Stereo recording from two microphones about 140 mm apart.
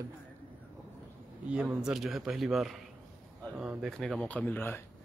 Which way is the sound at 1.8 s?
5° right (ahead or behind).